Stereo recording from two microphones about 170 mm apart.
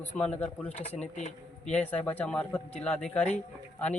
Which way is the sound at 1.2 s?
45° left (ahead or behind).